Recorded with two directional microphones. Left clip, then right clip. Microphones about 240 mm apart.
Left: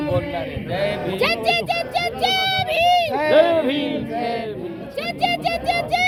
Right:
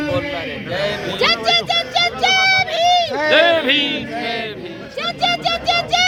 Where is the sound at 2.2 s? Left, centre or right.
Centre.